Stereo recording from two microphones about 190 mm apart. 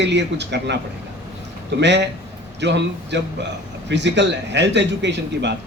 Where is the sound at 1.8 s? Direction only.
65° right (ahead or behind).